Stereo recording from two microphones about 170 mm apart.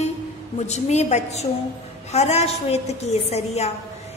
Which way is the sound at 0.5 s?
40° left (ahead or behind).